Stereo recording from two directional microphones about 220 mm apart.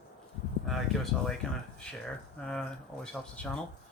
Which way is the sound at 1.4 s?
5° left (ahead or behind).